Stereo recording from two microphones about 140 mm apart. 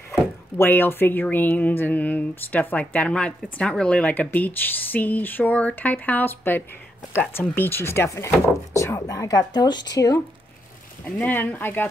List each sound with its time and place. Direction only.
0.6 s speech: 15° left (ahead or behind)
11.1 s speech: 15° left (ahead or behind)